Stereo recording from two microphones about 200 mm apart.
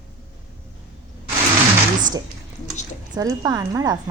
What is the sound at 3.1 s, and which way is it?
Speech, 15° right (ahead or behind).